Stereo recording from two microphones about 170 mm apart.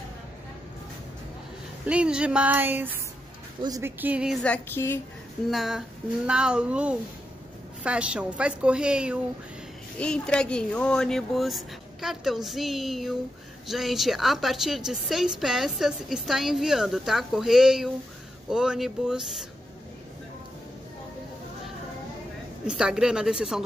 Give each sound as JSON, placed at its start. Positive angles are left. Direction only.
{"t": 1.9, "sound": "a woman's voice", "side_deg": -5}
{"t": 4.0, "sound": "a woman's voice", "side_deg": -5}
{"t": 4.4, "sound": "music", "side_deg": 10}
{"t": 5.5, "sound": "a woman's voice", "side_deg": 0}
{"t": 9.9, "sound": "a woman's voice", "side_deg": 5}
{"t": 22.7, "sound": "a woman's voice", "side_deg": -5}